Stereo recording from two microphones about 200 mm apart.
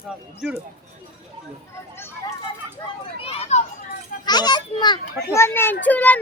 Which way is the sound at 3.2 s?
30° left (ahead or behind).